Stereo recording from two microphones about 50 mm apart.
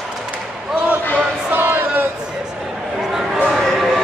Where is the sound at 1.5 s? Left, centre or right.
Right.